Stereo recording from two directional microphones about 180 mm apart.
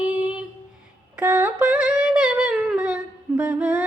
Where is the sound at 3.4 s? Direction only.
10° right (ahead or behind).